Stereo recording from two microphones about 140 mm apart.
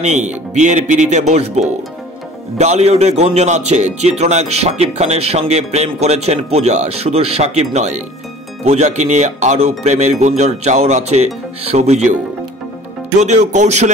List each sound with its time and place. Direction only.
0.0 s speech: 55° right (ahead or behind)
13.2 s speech: 55° right (ahead or behind)